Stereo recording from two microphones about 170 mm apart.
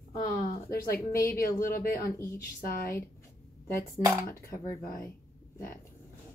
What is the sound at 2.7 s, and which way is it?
Speech, 60° left (ahead or behind).